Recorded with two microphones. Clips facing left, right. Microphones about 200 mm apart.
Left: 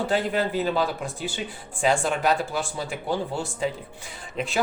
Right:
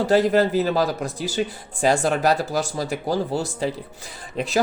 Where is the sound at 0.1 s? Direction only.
40° right (ahead or behind).